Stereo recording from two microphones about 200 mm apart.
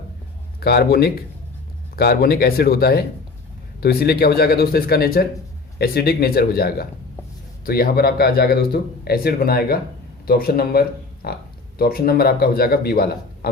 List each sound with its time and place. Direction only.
0.6 s speech: 55° left (ahead or behind)